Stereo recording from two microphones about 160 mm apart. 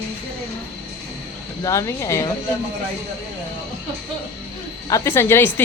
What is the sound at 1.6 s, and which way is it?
Speech, 20° left (ahead or behind).